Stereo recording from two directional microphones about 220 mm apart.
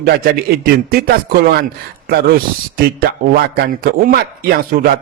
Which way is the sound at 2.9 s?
45° right (ahead or behind).